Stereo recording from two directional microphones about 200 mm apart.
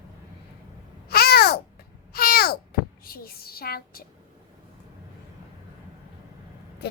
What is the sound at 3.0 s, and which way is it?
Speech, 50° left (ahead or behind).